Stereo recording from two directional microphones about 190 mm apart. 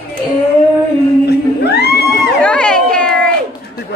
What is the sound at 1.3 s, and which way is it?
Music, 60° left (ahead or behind).